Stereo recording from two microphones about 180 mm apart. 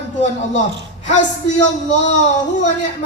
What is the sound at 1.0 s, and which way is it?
A man's voice, 40° left (ahead or behind).